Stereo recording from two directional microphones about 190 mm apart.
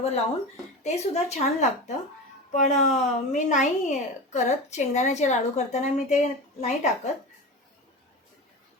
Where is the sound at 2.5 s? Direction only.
40° left (ahead or behind).